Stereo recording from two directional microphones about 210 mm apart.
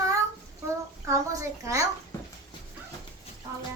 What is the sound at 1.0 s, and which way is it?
Speech, 15° right (ahead or behind).